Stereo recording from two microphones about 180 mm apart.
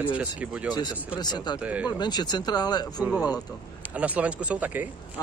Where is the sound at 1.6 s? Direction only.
10° right (ahead or behind).